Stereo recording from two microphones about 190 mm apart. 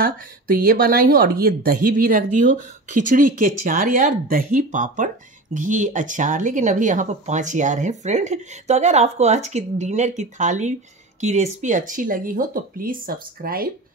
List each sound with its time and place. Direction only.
0.6 s speech: 50° right (ahead or behind)